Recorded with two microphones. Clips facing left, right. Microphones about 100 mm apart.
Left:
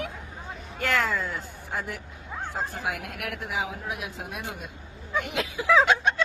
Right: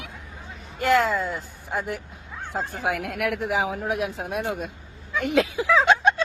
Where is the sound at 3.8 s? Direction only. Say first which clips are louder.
Right 8 dB; 40° right (ahead or behind).